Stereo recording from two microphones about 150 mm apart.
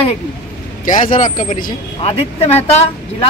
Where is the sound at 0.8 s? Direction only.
60° left (ahead or behind).